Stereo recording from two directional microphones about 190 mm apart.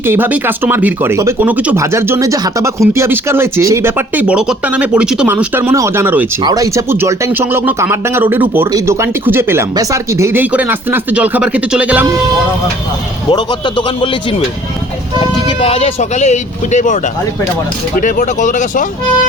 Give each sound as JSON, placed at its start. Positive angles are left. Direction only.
{"t": 0.0, "sound": "speech", "side_deg": -10}
{"t": 13.3, "sound": "a man's voice", "side_deg": 25}
{"t": 18.0, "sound": "speech", "side_deg": 40}